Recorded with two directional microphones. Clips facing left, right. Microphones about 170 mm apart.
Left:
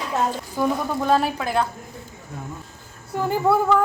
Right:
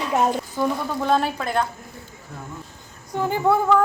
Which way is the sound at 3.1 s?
5° left (ahead or behind).